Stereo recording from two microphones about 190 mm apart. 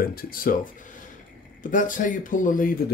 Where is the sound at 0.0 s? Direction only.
50° left (ahead or behind).